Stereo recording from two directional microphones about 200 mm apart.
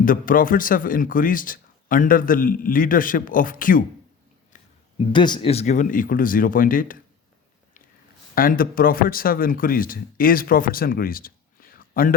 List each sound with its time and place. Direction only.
0.0 s speech: 45° left (ahead or behind)
4.5 s a sound: 40° left (ahead or behind)
5.1 s speech: 25° left (ahead or behind); by 7.0 s 45° left (ahead or behind)
8.4 s speech: 45° left (ahead or behind)